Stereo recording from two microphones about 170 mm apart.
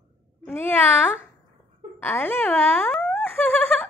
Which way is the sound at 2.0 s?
10° left (ahead or behind).